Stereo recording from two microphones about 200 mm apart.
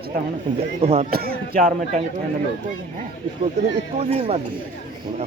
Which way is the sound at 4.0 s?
30° right (ahead or behind).